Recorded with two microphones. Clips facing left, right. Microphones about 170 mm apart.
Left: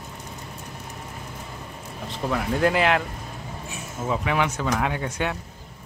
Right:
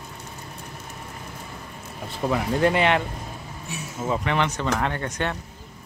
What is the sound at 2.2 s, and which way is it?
Speech, centre (ahead or behind).